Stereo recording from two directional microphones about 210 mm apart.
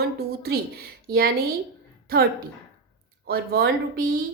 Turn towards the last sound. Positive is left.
turn(degrees=-40)  # may be behind; listen again after turning